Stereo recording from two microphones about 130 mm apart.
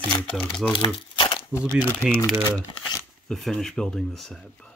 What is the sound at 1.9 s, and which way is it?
Speech, 10° left (ahead or behind).